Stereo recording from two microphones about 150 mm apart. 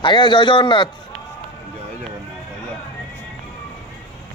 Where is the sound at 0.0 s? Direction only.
30° left (ahead or behind).